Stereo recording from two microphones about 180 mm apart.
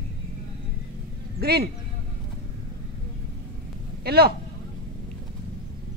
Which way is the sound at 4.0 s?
60° right (ahead or behind).